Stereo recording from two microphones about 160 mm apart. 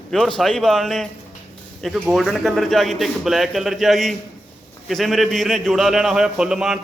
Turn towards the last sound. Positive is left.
turn(degrees=-5)  # may be behind; listen again after turning